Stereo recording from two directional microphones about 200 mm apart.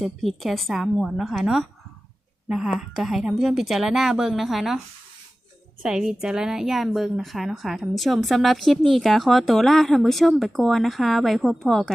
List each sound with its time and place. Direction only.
0.0 s a woman's voice: centre (ahead or behind)
5.8 s a woman's voice: 5° right (ahead or behind)